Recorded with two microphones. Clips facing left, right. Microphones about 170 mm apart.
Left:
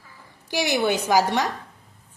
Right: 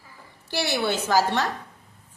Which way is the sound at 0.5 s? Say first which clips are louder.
Left 3 dB; 15° left (ahead or behind).